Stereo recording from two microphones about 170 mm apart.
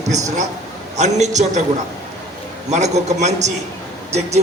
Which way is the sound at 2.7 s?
40° right (ahead or behind).